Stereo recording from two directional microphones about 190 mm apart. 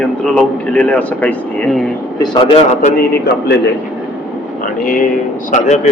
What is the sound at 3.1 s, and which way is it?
Speech, 55° left (ahead or behind).